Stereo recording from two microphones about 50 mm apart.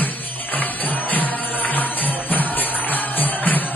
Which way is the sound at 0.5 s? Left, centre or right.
Left.